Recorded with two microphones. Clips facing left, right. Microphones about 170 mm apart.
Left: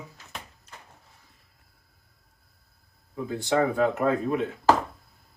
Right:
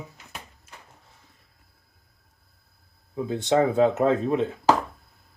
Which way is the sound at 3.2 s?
20° right (ahead or behind).